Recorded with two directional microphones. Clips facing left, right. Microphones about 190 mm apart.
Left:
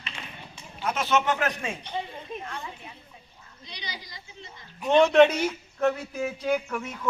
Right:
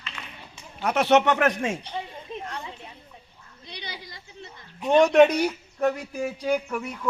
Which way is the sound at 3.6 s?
55° right (ahead or behind).